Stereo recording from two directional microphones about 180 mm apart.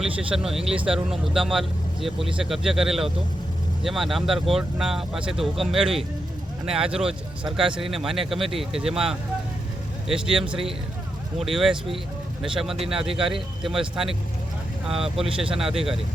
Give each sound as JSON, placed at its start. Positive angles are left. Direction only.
{"t": 0.0, "sound": "speech", "side_deg": -5}
{"t": 10.3, "sound": "a man's voice", "side_deg": -30}
{"t": 11.3, "sound": "speech", "side_deg": 0}
{"t": 12.9, "sound": "speech", "side_deg": 0}